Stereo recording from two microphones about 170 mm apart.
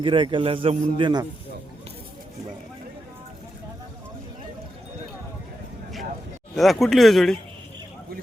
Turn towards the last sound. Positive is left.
turn(degrees=0)  # may be behind; listen again after turning